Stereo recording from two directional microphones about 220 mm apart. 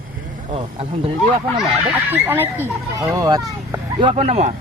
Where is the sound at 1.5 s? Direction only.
5° right (ahead or behind); by 4.5 s 30° right (ahead or behind).